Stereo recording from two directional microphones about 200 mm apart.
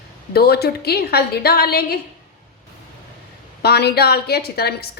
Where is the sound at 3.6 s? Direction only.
55° left (ahead or behind).